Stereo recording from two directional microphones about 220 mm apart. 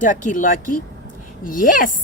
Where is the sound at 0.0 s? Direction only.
35° left (ahead or behind).